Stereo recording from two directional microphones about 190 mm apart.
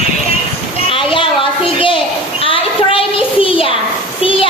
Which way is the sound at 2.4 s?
30° left (ahead or behind).